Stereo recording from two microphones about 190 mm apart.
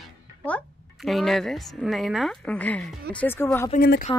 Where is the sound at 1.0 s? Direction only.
Centre (ahead or behind).